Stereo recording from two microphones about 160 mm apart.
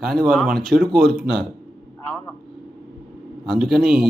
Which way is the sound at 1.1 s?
80° right.